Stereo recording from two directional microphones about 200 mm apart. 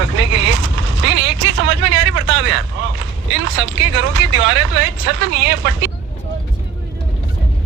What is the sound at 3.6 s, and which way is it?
Speech, 70° right (ahead or behind).